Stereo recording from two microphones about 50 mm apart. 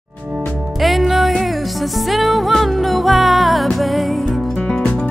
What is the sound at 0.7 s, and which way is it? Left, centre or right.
Music, centre.